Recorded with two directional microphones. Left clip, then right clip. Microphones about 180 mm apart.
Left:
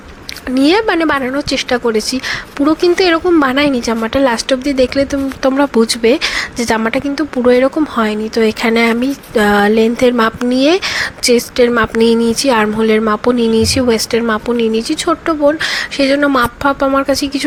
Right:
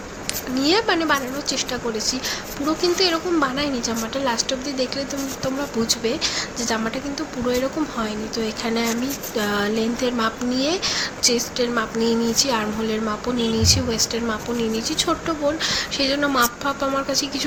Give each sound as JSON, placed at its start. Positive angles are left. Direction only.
{"t": 0.5, "sound": "speech", "side_deg": 40}